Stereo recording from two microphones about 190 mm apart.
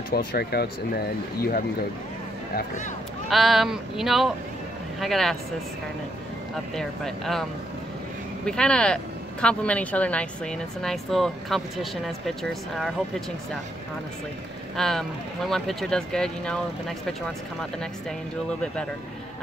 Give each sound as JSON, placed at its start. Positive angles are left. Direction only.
{"t": 0.1, "sound": "speech", "side_deg": 55}
{"t": 2.5, "sound": "speech", "side_deg": 40}
{"t": 3.3, "sound": "speech", "side_deg": 0}
{"t": 6.7, "sound": "speech", "side_deg": 0}
{"t": 8.5, "sound": "speech", "side_deg": 5}
{"t": 14.8, "sound": "speech", "side_deg": 0}